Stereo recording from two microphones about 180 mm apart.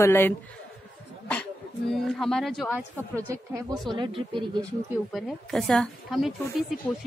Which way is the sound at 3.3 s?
25° right (ahead or behind).